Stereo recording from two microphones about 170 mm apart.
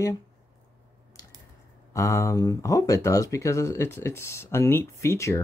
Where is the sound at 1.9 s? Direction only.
20° left (ahead or behind).